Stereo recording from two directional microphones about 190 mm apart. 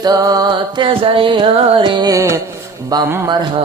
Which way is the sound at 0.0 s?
20° right (ahead or behind).